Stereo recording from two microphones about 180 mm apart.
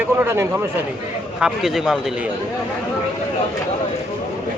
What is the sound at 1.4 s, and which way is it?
Speech, centre (ahead or behind).